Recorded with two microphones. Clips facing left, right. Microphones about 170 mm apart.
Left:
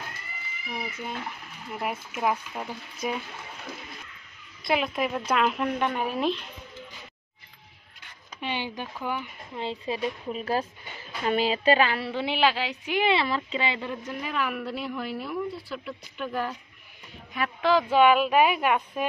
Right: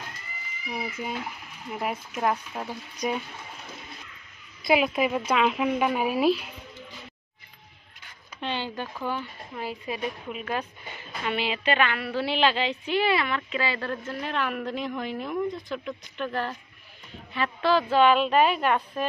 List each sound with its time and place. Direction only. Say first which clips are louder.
1.7 s speech: right 1 dB; centre (ahead or behind)
4.6 s a woman's voice: right 4 dB; 5° right (ahead or behind)
8.4 s speech: right 1 dB; 15° left (ahead or behind); by 12.1 s 30° left (ahead or behind)
12.1 s a woman's voice: even; 15° left (ahead or behind)
13.1 s a woman's voice: left 1 dB; 25° left (ahead or behind); by 19.0 s 10° left (ahead or behind)